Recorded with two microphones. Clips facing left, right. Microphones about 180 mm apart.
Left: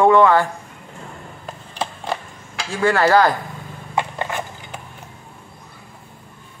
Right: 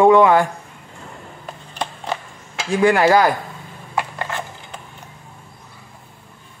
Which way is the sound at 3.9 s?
20° left (ahead or behind).